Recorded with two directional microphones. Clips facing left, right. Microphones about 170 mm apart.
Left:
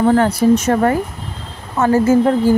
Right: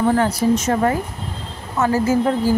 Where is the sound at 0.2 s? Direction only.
60° left (ahead or behind).